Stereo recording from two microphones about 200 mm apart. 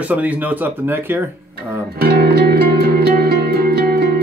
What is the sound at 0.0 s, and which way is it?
Speech, 10° right (ahead or behind).